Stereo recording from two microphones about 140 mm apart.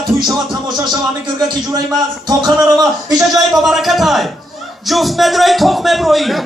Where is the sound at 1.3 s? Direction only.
30° right (ahead or behind).